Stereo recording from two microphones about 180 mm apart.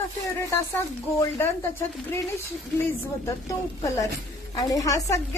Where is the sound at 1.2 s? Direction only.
15° left (ahead or behind).